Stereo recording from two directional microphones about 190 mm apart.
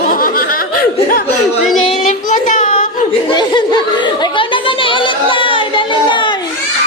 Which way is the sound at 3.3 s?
25° left (ahead or behind).